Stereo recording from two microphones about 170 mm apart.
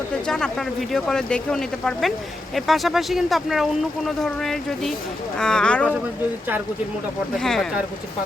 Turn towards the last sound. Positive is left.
turn(degrees=5)  # may be behind; listen again after turning